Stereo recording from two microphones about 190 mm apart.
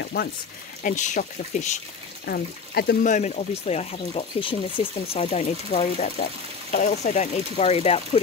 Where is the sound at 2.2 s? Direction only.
55° left (ahead or behind); by 8.0 s 35° left (ahead or behind).